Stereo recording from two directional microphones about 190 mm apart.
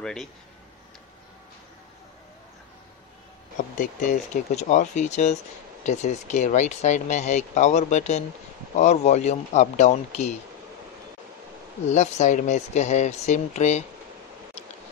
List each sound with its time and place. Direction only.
0.0 s speech: 5° left (ahead or behind)
3.5 s speech: 40° left (ahead or behind)
11.9 s speech: 35° left (ahead or behind)